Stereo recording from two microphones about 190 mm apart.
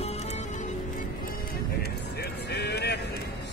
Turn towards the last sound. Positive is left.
turn(degrees=60)  # may be behind; listen again after turning